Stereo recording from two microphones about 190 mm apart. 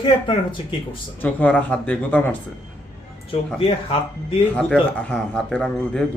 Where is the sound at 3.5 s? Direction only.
30° left (ahead or behind).